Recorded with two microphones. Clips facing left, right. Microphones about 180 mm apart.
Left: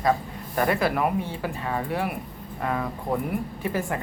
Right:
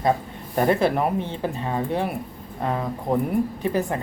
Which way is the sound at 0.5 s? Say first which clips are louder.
Right 4 dB; 25° right (ahead or behind).